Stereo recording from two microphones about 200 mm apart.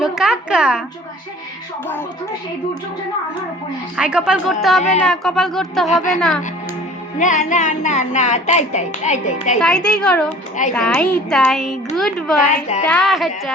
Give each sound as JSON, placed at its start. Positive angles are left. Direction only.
{"t": 0.0, "sound": "speech", "side_deg": -5}
{"t": 3.9, "sound": "speech", "side_deg": -5}
{"t": 5.9, "sound": "a woman's voice", "side_deg": 40}
{"t": 6.1, "sound": "speech", "side_deg": 0}
{"t": 7.2, "sound": "a woman's voice", "side_deg": 40}
{"t": 9.6, "sound": "speech", "side_deg": 5}